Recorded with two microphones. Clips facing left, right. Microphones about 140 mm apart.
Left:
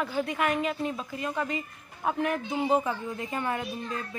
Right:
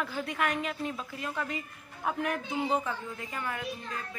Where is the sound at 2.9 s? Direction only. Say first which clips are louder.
Left 5 dB; 25° left (ahead or behind).